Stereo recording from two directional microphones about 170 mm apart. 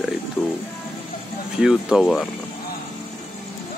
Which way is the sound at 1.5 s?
5° right (ahead or behind).